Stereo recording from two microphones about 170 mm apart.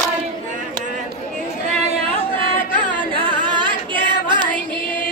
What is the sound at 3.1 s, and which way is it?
Singing, 30° right (ahead or behind).